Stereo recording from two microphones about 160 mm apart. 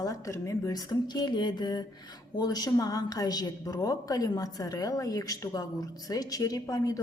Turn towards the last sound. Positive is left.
turn(degrees=20)  # may be behind; listen again after turning